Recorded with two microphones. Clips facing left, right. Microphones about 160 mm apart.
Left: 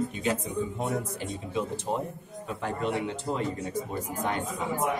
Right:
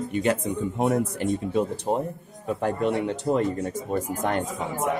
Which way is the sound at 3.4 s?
50° right (ahead or behind).